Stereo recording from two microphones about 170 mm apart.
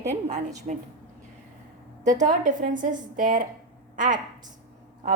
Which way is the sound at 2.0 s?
45° right (ahead or behind).